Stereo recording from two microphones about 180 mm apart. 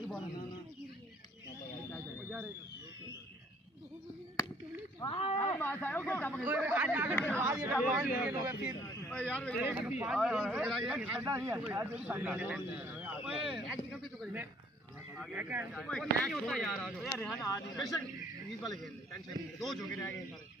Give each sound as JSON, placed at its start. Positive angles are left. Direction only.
{"t": 5.0, "sound": "a sound", "side_deg": 30}
{"t": 5.4, "sound": "speech", "side_deg": 10}
{"t": 6.4, "sound": "a man's voice", "side_deg": -10}
{"t": 9.1, "sound": "speech", "side_deg": 5}
{"t": 9.6, "sound": "a man's voice", "side_deg": -10}
{"t": 15.7, "sound": "speech", "side_deg": 0}
{"t": 17.2, "sound": "speech", "side_deg": 15}
{"t": 19.1, "sound": "speech", "side_deg": 0}